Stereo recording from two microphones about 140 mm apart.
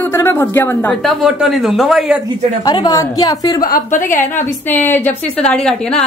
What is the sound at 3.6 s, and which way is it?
Speech, 80° left.